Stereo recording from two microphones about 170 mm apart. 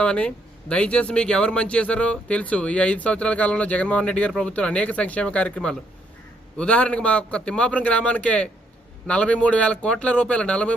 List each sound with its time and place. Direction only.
0.0 s speech: 5° left (ahead or behind)